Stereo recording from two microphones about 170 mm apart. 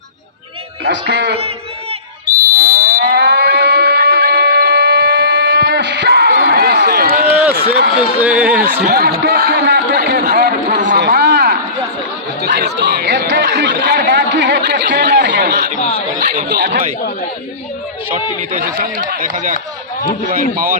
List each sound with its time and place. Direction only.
0.9 s speech: 85° right
2.2 s moo: 60° right (ahead or behind)
7.5 s a man's voice: 70° right (ahead or behind)
7.9 s a man's voice: 5° right (ahead or behind)
8.8 s a man's voice: 70° right (ahead or behind)
10.9 s a sound: 70° right (ahead or behind)
12.4 s speech: 80° right
15.2 s chatter: 90° right
16.2 s speech: 50° right (ahead or behind)
16.5 s a man's voice: 70° right (ahead or behind)
18.5 s speech: 60° right (ahead or behind)